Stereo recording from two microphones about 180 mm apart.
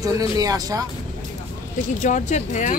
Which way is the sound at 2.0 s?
40° left (ahead or behind).